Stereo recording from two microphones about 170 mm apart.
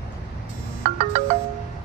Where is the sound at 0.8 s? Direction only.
40° right (ahead or behind).